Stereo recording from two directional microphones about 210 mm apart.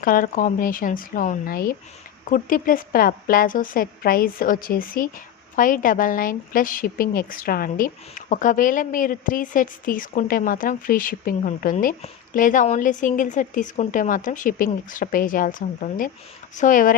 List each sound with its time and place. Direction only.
0.0 s a woman's voice: 40° left (ahead or behind)